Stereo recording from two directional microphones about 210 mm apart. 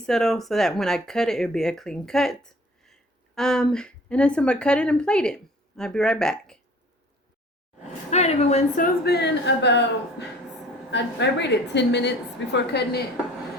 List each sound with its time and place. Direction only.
0.0 s a woman's voice: centre (ahead or behind)
8.1 s a woman's voice: 30° left (ahead or behind); by 12.6 s 60° left (ahead or behind)